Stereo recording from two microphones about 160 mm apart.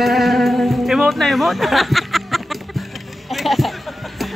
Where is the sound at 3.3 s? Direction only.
Centre (ahead or behind).